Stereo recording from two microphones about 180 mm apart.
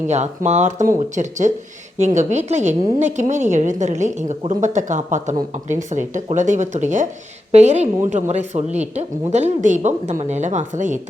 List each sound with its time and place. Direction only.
0.1 s a woman's voice: 40° right (ahead or behind)